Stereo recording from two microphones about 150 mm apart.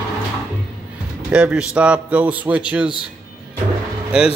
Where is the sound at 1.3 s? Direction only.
5° right (ahead or behind).